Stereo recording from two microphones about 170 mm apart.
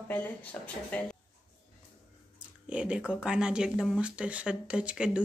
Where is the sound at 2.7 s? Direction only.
5° right (ahead or behind).